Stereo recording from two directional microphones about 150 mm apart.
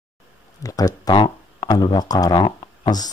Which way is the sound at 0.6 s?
20° left (ahead or behind).